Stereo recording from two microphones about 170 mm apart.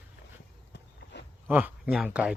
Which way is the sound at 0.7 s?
90° left.